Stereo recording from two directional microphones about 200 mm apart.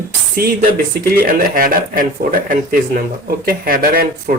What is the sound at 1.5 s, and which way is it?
Speech, 45° right (ahead or behind).